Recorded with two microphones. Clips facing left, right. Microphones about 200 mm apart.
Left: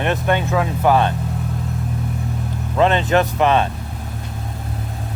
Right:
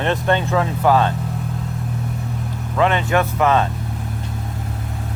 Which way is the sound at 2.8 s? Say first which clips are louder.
Left 2 dB; 30° left (ahead or behind).